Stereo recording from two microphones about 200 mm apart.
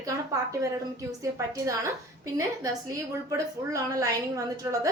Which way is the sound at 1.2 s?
15° right (ahead or behind).